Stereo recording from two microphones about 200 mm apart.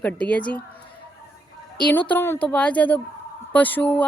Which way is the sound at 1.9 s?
10° left (ahead or behind).